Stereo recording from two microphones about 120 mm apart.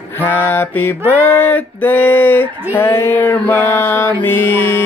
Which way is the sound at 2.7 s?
15° left (ahead or behind).